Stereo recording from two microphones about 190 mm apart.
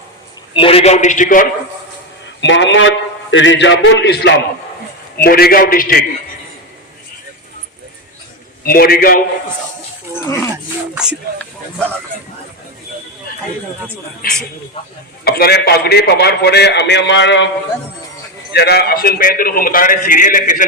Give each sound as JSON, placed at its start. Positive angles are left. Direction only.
{"t": 0.5, "sound": "a man's voice", "side_deg": 30}
{"t": 2.4, "sound": "a man's voice", "side_deg": 70}
{"t": 8.6, "sound": "a man's voice", "side_deg": 50}
{"t": 10.2, "sound": "dog", "side_deg": 15}
{"t": 10.9, "sound": "speech", "side_deg": -5}
{"t": 15.2, "sound": "a man's voice", "side_deg": 55}
{"t": 18.5, "sound": "a man's voice", "side_deg": 60}